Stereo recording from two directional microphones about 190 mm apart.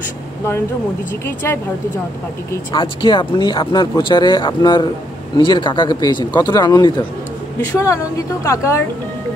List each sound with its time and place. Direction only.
1.2 s a woman's voice: 10° left (ahead or behind)
2.7 s a woman's voice: 25° left (ahead or behind)